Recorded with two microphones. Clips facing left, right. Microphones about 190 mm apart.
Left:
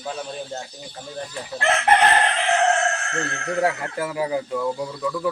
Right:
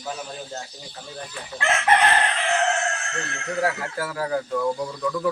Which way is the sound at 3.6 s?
20° left (ahead or behind).